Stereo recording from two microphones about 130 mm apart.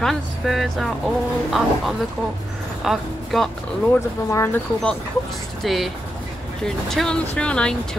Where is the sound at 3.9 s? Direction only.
20° left (ahead or behind).